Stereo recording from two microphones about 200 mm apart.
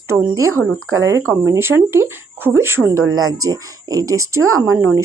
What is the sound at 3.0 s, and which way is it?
Speech, 90° right.